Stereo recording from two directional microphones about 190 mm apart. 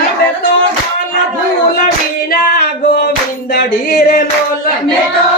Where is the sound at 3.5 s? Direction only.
55° left (ahead or behind).